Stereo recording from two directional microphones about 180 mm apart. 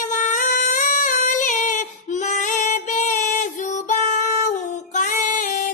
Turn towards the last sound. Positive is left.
turn(degrees=45)  # may be behind; listen again after turning